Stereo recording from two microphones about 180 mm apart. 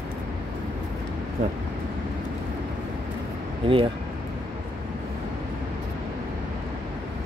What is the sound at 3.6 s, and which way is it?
Speech, 30° right (ahead or behind).